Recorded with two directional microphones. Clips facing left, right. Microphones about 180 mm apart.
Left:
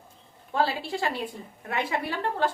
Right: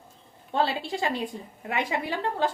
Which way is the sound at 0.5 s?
20° right (ahead or behind).